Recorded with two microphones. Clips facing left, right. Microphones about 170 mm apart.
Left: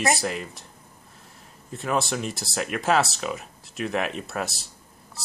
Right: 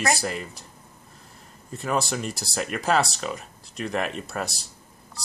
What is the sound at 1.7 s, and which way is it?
Speech, centre (ahead or behind).